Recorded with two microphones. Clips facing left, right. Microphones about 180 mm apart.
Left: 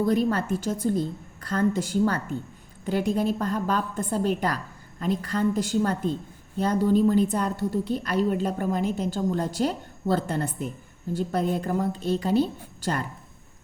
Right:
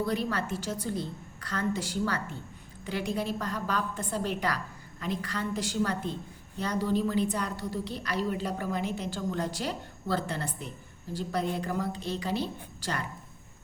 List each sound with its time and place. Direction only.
0.0 s a woman's voice: 45° left (ahead or behind)